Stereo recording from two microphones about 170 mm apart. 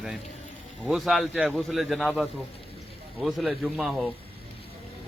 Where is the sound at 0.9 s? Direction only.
Centre (ahead or behind).